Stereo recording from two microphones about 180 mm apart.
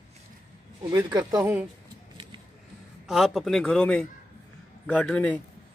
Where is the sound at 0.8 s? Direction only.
20° right (ahead or behind).